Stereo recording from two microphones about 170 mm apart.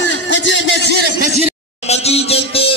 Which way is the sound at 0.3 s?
90° left.